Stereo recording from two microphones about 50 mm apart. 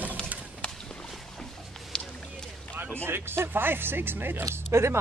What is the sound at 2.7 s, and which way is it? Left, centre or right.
Speech, right.